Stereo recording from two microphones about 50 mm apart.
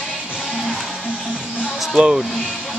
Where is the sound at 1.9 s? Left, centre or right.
Centre.